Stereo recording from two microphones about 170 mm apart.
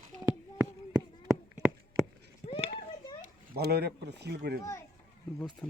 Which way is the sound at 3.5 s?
70° right (ahead or behind).